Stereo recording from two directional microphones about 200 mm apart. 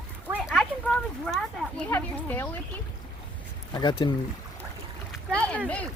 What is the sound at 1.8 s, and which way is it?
Speech, 10° left (ahead or behind).